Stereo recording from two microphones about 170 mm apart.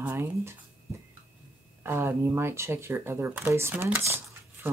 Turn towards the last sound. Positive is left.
turn(degrees=-15)  # may be behind; listen again after turning